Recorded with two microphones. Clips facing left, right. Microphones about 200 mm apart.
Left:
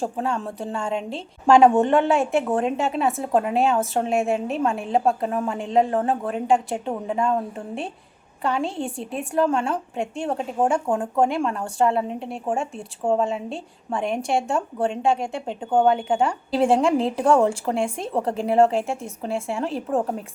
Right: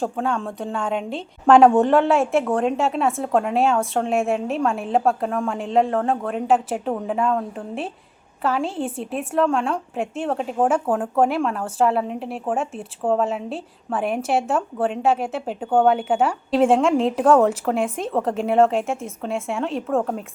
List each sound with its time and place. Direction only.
0.0 s speech: centre (ahead or behind)
19.9 s a woman's voice: 15° left (ahead or behind)